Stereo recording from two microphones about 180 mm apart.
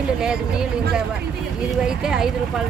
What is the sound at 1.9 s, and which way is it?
Speech, 5° right (ahead or behind).